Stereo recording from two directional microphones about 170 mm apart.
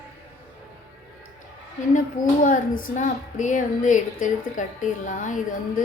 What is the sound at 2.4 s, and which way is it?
A woman's voice, 55° left (ahead or behind).